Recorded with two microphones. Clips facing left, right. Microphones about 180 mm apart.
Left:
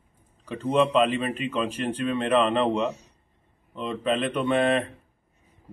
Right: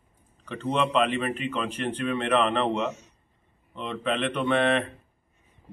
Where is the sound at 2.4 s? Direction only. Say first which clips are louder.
Left 2 dB; 30° left (ahead or behind).